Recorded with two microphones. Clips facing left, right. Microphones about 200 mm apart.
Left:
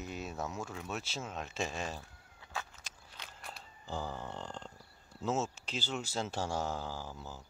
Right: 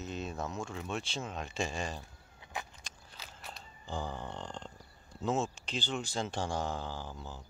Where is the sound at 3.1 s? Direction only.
5° right (ahead or behind).